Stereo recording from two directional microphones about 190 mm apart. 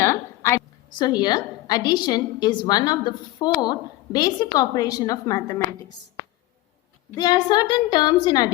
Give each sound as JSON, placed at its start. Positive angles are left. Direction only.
{"t": 0.0, "sound": "a woman's voice", "side_deg": 15}
{"t": 7.2, "sound": "a woman's voice", "side_deg": 20}